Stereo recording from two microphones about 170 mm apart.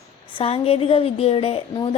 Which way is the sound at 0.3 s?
35° left (ahead or behind).